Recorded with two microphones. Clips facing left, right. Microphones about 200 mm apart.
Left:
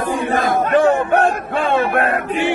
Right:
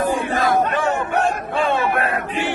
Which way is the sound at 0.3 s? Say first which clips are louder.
Left 3 dB; 60° left (ahead or behind).